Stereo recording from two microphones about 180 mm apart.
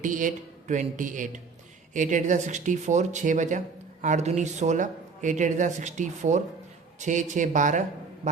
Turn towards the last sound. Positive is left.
turn(degrees=-45)  # may be behind; listen again after turning